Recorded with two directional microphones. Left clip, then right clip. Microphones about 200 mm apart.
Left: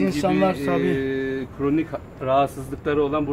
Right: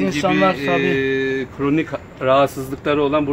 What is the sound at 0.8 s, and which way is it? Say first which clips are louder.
Speech: right 5 dB; 45° right (ahead or behind).